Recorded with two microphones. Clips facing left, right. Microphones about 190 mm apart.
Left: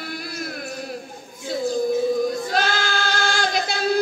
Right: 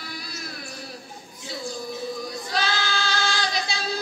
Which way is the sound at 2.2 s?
50° left (ahead or behind).